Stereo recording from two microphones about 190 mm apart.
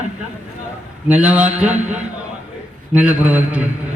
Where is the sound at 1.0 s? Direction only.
5° right (ahead or behind).